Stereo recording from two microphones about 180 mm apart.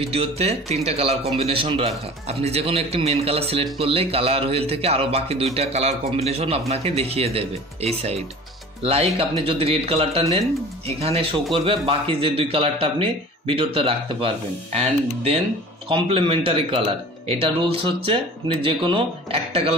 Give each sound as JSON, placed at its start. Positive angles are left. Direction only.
{"t": 0.0, "sound": "speech", "side_deg": -35}